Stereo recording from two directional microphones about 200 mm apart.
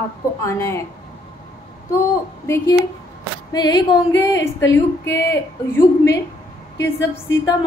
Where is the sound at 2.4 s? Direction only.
15° left (ahead or behind).